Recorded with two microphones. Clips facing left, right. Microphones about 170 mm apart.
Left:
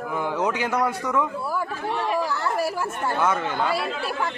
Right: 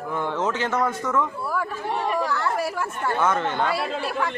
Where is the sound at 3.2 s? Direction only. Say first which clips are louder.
Right 1 dB; 10° left (ahead or behind).